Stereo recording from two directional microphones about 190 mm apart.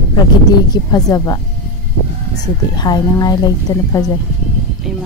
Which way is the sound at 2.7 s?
20° left (ahead or behind).